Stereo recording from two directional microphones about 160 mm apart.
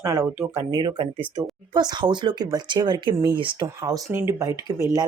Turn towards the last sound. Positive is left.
turn(degrees=-20)  # may be behind; listen again after turning